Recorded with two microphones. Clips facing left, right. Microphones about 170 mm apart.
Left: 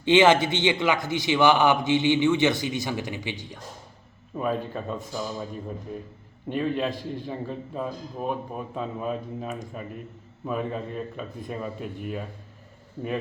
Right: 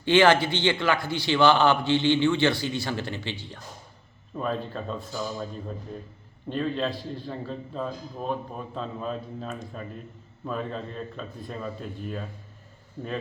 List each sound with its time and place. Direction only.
0.0 s a man's voice: 20° left (ahead or behind)